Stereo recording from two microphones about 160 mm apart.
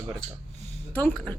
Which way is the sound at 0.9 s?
10° left (ahead or behind).